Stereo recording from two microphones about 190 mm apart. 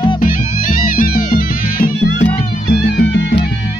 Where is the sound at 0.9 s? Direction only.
50° left (ahead or behind).